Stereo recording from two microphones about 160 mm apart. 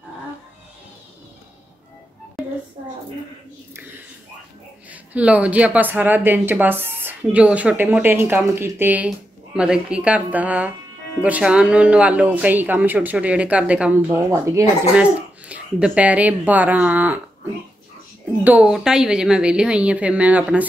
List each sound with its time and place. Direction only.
4.9 s speech: 10° right (ahead or behind)
18.4 s speech: 10° right (ahead or behind)